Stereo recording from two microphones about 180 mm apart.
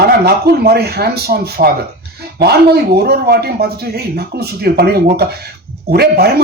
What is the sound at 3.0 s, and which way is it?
Speech, 60° right (ahead or behind).